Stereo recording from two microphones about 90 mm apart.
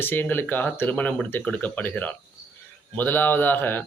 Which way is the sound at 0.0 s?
20° left (ahead or behind).